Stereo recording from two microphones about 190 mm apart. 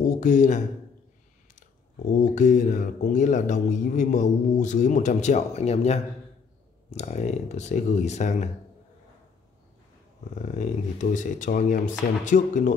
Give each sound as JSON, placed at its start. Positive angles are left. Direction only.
{"t": 0.2, "sound": "speech", "side_deg": 40}
{"t": 2.0, "sound": "speech", "side_deg": 40}
{"t": 10.3, "sound": "speech", "side_deg": 40}